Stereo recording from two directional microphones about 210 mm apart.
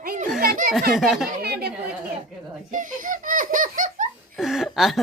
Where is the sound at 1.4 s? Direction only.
50° right (ahead or behind).